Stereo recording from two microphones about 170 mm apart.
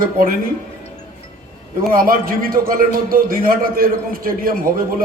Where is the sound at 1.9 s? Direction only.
55° right (ahead or behind).